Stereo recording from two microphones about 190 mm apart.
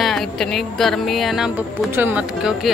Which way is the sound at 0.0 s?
Centre (ahead or behind).